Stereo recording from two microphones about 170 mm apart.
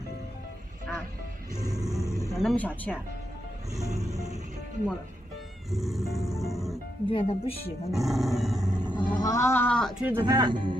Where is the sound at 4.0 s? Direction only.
45° right (ahead or behind).